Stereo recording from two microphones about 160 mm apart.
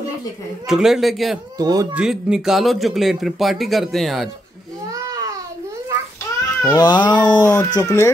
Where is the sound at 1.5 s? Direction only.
25° right (ahead or behind).